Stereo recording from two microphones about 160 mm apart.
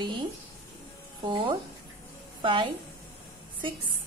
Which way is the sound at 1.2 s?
30° right (ahead or behind).